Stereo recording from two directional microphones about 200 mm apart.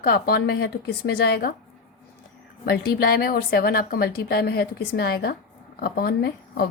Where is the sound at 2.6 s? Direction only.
50° left (ahead or behind).